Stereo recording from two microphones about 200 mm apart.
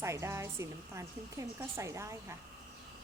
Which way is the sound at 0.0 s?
15° right (ahead or behind).